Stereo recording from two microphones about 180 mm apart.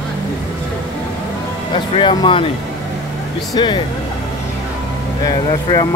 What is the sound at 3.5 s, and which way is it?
Speech, 25° left (ahead or behind).